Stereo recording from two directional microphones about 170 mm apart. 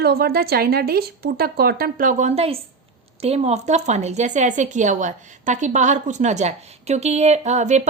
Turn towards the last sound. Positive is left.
turn(degrees=-45)  # may be behind; listen again after turning